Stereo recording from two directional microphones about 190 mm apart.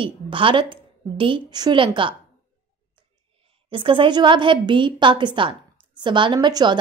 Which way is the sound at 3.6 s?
25° right (ahead or behind).